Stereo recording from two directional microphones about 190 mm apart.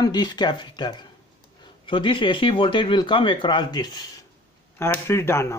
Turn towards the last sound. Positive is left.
turn(degrees=15)  # may be behind; listen again after turning